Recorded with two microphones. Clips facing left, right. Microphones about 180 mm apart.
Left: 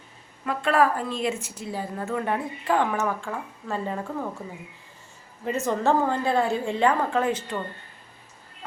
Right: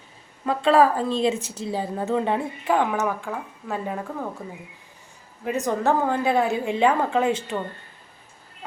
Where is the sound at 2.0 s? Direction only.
20° right (ahead or behind); by 4.3 s 5° right (ahead or behind).